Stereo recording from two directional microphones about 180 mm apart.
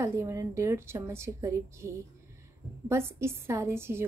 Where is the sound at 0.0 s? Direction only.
15° right (ahead or behind).